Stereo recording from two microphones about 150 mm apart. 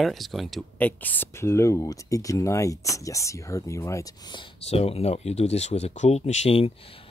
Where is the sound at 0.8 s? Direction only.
10° left (ahead or behind).